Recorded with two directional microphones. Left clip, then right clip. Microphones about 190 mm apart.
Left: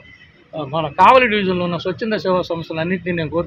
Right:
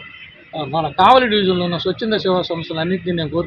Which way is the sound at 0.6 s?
5° left (ahead or behind).